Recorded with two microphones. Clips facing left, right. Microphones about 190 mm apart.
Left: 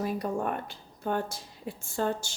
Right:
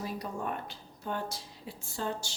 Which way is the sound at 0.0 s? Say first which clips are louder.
Left 6 dB; 55° left (ahead or behind).